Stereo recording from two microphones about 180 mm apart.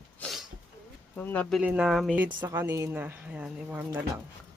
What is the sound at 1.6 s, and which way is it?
Speech, 5° right (ahead or behind).